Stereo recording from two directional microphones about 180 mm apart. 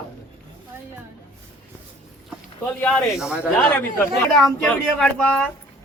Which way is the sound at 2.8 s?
10° left (ahead or behind).